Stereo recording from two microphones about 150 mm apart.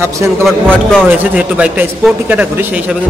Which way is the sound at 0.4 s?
5° left (ahead or behind).